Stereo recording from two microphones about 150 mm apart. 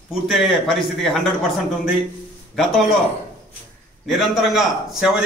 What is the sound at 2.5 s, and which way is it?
Speech, centre (ahead or behind).